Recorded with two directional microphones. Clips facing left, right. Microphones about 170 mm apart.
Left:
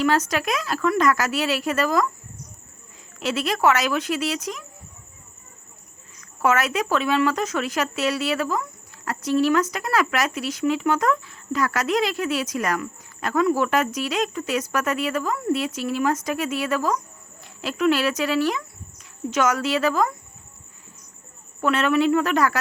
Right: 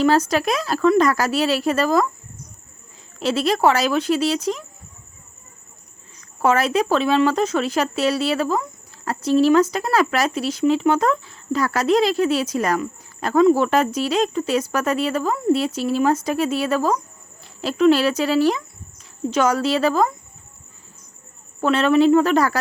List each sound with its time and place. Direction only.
0.0 s speech: 30° right (ahead or behind)
3.2 s speech: 30° right (ahead or behind)
6.1 s speech: 30° right (ahead or behind)
21.6 s speech: 30° right (ahead or behind)